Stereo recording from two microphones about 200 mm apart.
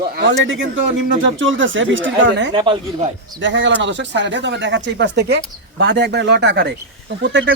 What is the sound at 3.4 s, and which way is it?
Speech, 65° right (ahead or behind).